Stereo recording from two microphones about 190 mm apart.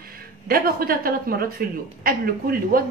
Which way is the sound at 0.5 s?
50° right (ahead or behind).